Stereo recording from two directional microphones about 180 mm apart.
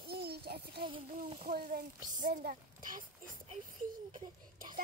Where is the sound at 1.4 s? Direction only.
55° right (ahead or behind).